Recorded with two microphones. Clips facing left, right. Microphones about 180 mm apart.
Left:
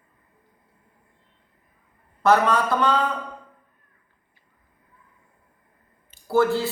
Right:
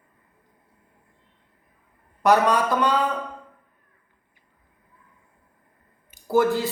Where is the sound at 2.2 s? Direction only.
15° right (ahead or behind).